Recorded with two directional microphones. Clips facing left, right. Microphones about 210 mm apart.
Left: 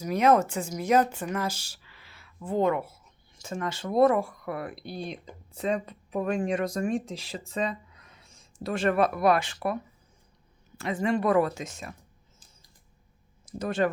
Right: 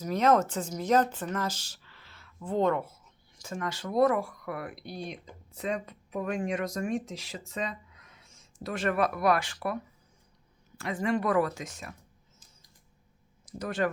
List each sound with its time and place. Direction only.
0.0 s speech: 10° left (ahead or behind)
3.3 s speech: 25° left (ahead or behind)
13.4 s speech: 25° left (ahead or behind)